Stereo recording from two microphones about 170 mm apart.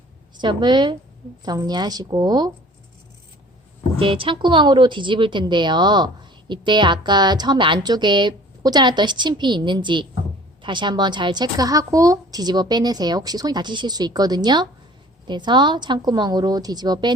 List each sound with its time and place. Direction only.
0.3 s a woman's voice: 25° right (ahead or behind)
4.0 s a woman's voice: 30° right (ahead or behind)